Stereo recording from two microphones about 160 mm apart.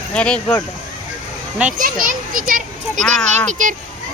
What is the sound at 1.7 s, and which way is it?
A child's voice, 55° right (ahead or behind).